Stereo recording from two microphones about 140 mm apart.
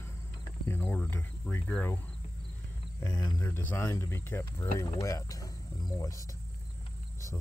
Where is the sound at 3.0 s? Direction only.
30° left (ahead or behind).